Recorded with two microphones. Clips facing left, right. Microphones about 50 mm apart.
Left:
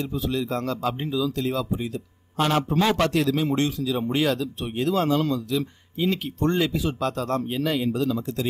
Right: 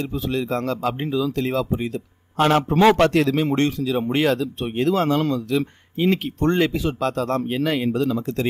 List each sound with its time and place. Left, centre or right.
0.0 s speech: right